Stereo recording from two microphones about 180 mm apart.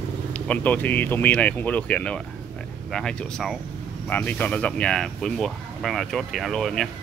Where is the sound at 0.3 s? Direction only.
10° left (ahead or behind).